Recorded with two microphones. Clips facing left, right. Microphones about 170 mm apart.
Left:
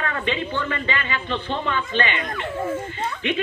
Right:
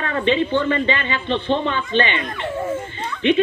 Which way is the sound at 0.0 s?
30° right (ahead or behind).